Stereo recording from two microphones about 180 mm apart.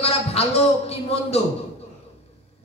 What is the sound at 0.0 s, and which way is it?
A man's voice, 35° left (ahead or behind).